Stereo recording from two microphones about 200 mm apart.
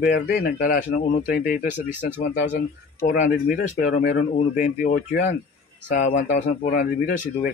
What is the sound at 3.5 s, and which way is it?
Speech, 50° left (ahead or behind).